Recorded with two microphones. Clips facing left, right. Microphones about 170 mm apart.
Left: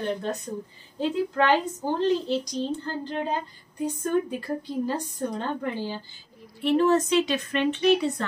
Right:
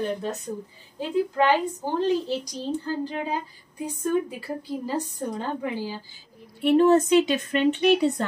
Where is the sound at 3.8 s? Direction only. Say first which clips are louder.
Even; 5° right (ahead or behind).